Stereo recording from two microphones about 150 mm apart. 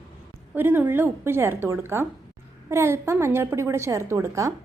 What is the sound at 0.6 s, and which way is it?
A woman's voice, 15° right (ahead or behind).